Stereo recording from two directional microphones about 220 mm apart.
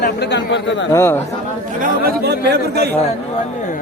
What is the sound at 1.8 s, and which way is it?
Speech, 45° right (ahead or behind).